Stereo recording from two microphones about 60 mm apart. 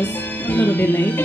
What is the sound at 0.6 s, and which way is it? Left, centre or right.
Music, left.